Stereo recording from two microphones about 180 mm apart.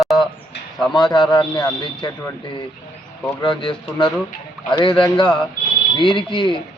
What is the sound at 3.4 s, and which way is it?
A man's voice, 25° left (ahead or behind).